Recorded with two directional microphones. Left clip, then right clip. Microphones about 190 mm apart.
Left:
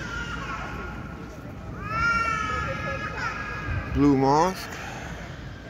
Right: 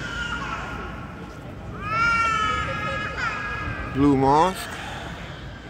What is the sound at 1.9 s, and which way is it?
Cat, 65° left (ahead or behind).